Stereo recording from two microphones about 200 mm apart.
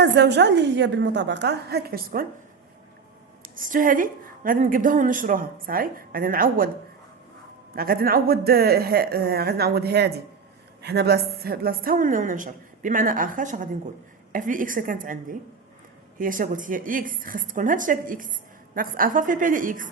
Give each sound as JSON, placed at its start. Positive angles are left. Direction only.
{"t": 0.0, "sound": "a woman's voice", "side_deg": -60}
{"t": 3.4, "sound": "a woman's voice", "side_deg": -45}
{"t": 7.8, "sound": "a woman's voice", "side_deg": -50}